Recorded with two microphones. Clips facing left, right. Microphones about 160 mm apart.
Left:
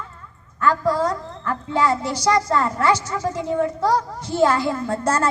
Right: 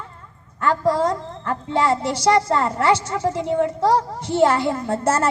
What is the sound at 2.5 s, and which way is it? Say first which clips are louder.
A woman's voice: right 1 dB; 30° right (ahead or behind).